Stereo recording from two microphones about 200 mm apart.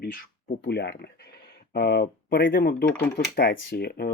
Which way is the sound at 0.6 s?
55° left (ahead or behind).